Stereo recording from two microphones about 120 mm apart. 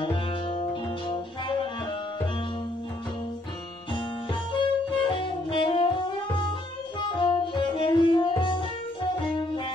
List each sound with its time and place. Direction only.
0.0 s music: 45° left (ahead or behind)
3.9 s music: 45° left (ahead or behind)
7.1 s music: 40° left (ahead or behind)